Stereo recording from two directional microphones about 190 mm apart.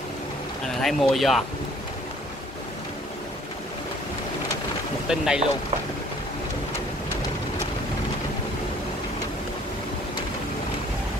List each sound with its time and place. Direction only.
0.8 s speech: centre (ahead or behind)
5.0 s speech: 5° right (ahead or behind)